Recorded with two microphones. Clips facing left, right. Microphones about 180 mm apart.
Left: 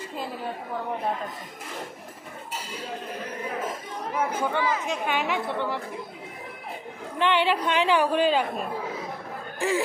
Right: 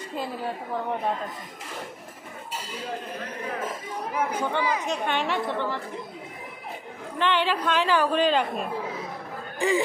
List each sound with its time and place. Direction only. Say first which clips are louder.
4.1 s speech: left 1 dB; 15° right (ahead or behind)
4.8 s a woman's voice: even; 5° left (ahead or behind)
7.2 s a woman's voice: left 2 dB; 15° left (ahead or behind)
9.6 s speech: right 2 dB; centre (ahead or behind)